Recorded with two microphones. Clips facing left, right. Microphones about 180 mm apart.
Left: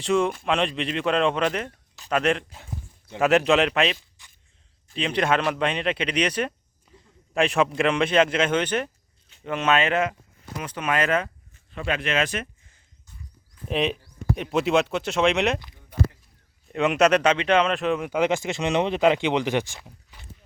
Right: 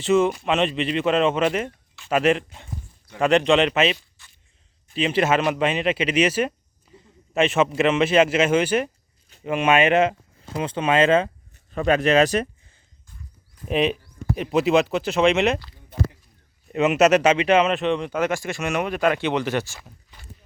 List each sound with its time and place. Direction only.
0.0 s speech: 5° right (ahead or behind)
4.2 s a sound: 15° left (ahead or behind)
4.9 s a man's voice: 5° right (ahead or behind); by 11.3 s 25° right (ahead or behind)
11.7 s speech: 40° right (ahead or behind)
13.7 s speech: 5° right (ahead or behind)
16.7 s speech: 5° right (ahead or behind); by 20.1 s 15° left (ahead or behind)